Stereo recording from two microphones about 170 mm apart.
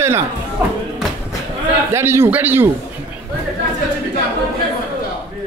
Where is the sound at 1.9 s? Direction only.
15° right (ahead or behind).